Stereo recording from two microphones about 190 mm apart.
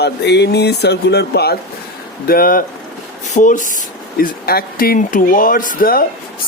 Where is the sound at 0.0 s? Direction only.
60° left (ahead or behind).